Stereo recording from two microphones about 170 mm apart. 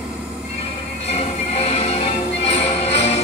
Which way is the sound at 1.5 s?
35° left (ahead or behind).